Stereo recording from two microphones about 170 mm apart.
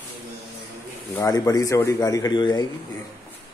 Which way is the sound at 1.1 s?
20° left (ahead or behind).